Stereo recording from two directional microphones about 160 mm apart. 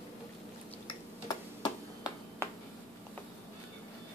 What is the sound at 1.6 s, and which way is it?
Finger snapping, 25° left (ahead or behind).